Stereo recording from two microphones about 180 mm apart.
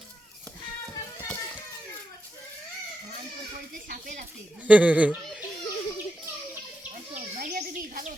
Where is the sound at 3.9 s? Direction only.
50° right (ahead or behind).